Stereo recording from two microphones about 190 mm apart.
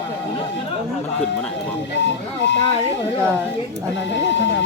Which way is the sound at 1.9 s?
70° left (ahead or behind).